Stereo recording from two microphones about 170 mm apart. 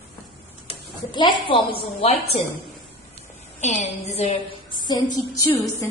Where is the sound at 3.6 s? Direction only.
45° left (ahead or behind).